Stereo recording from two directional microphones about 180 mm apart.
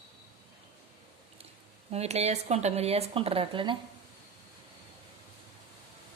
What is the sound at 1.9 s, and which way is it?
Speech, 35° right (ahead or behind).